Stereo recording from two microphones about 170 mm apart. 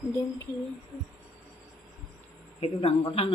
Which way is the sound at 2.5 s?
35° left (ahead or behind).